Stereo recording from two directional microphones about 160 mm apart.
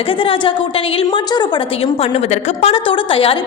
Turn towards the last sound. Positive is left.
turn(degrees=35)  # may be behind; listen again after turning